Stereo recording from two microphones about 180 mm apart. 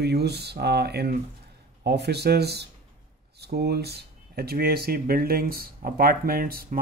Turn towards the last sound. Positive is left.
turn(degrees=-55)  # may be behind; listen again after turning